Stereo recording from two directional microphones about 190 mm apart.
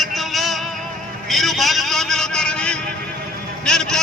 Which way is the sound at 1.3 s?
Centre (ahead or behind).